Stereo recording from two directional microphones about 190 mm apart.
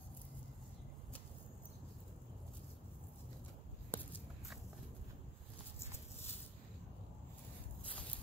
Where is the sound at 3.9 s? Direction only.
10° left (ahead or behind).